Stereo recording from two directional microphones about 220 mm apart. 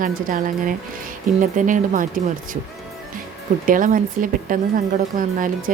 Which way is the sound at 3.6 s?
40° right (ahead or behind).